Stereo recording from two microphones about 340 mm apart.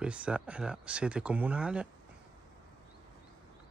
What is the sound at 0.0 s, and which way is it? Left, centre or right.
Speech, centre.